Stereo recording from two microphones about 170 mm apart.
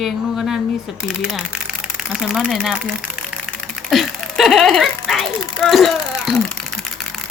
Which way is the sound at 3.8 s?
Centre (ahead or behind).